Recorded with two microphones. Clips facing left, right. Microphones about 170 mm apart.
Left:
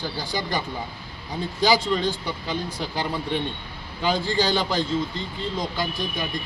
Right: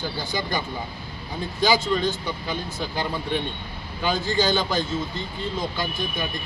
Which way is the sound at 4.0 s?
30° left (ahead or behind).